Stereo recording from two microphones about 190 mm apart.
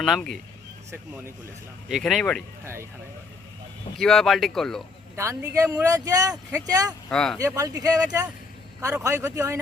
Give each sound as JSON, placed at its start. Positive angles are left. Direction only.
{"t": 0.0, "sound": "speech", "side_deg": 0}
{"t": 1.9, "sound": "speech", "side_deg": 0}
{"t": 3.9, "sound": "speech", "side_deg": 0}
{"t": 5.1, "sound": "speech", "side_deg": -15}
{"t": 7.1, "sound": "speech", "side_deg": 5}
{"t": 7.3, "sound": "speech", "side_deg": -20}